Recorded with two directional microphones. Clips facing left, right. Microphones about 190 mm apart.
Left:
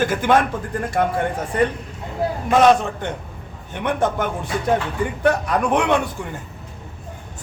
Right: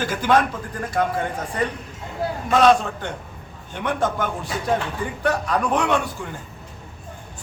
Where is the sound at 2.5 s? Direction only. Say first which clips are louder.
Left 2 dB; 15° left (ahead or behind).